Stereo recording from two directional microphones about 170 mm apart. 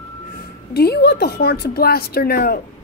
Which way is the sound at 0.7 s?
70° left (ahead or behind).